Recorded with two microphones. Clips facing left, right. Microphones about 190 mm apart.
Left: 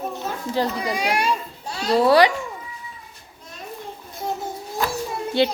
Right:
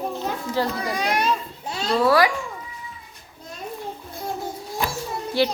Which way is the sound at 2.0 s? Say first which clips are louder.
Left 3 dB; 25° left (ahead or behind).